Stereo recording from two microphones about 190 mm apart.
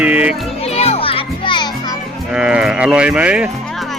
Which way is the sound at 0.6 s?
35° left (ahead or behind).